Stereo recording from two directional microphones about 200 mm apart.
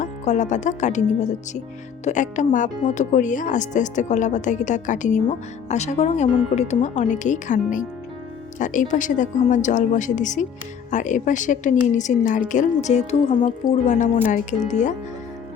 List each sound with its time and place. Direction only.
0.0 s speech: 35° left (ahead or behind)